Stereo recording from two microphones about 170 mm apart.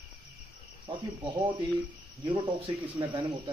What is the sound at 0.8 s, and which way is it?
Speech, 25° right (ahead or behind).